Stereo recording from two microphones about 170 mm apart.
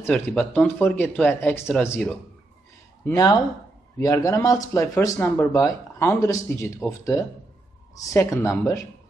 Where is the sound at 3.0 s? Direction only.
20° left (ahead or behind).